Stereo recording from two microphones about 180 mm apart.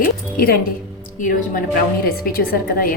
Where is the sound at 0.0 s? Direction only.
55° left (ahead or behind).